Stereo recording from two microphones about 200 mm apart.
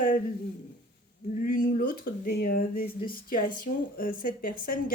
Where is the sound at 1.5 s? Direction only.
40° left (ahead or behind).